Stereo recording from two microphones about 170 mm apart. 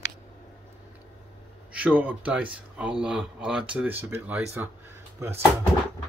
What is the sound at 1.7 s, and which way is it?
Speech, 5° right (ahead or behind).